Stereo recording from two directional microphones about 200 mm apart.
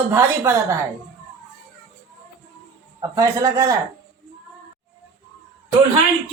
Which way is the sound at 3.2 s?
15° right (ahead or behind).